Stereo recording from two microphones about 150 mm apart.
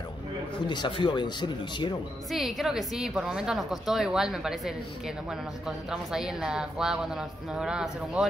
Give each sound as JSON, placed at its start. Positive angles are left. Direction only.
{"t": 0.7, "sound": "speech", "side_deg": 30}
{"t": 2.3, "sound": "a woman's voice", "side_deg": 0}